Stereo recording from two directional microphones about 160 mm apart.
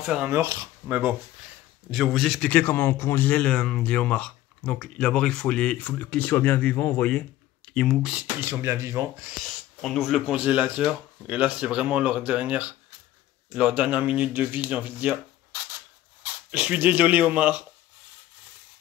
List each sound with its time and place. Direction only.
0.0 s speech: 5° right (ahead or behind)
0.3 s speech: 20° right (ahead or behind)
0.8 s a man's voice: 10° right (ahead or behind)
9.4 s speech: 5° left (ahead or behind)
16.2 s speech: 10° right (ahead or behind)